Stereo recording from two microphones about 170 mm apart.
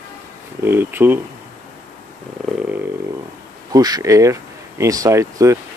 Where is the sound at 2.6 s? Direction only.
10° right (ahead or behind).